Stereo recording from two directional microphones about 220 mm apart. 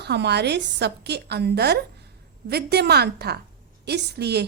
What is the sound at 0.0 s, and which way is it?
A woman's voice, 50° right (ahead or behind).